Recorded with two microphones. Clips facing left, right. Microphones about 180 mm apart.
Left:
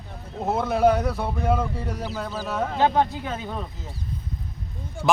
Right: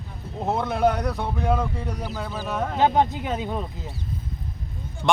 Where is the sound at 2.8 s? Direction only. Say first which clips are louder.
Right 1 dB; 20° right (ahead or behind).